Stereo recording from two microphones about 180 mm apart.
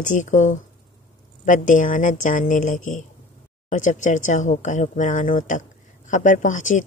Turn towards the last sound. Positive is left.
turn(degrees=45)  # may be behind; listen again after turning